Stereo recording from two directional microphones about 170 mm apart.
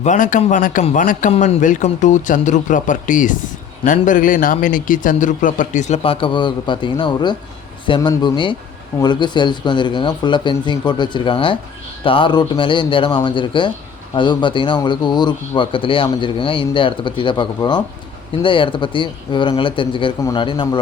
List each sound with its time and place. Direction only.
0.0 s a man's voice: 45° left (ahead or behind); by 20.7 s 30° left (ahead or behind)